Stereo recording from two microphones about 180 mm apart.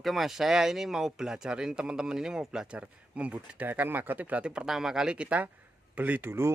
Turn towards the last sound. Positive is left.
turn(degrees=-10)  # may be behind; listen again after turning